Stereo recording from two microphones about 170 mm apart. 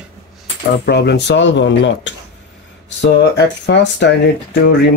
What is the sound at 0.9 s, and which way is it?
Speech, 80° left.